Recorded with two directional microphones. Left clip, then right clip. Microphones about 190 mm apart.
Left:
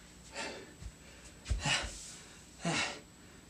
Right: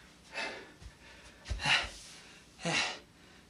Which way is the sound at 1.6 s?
10° left (ahead or behind).